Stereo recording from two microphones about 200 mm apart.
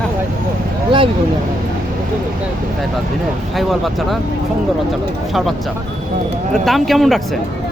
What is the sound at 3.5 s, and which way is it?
Speech, centre (ahead or behind).